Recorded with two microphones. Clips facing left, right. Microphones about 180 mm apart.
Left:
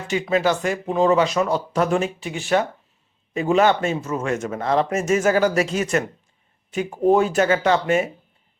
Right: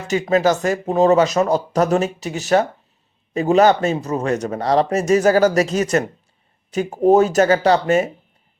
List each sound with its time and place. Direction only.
0.1 s speech: 40° right (ahead or behind)